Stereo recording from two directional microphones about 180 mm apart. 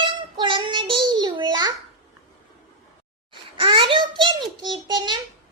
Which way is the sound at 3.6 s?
30° right (ahead or behind).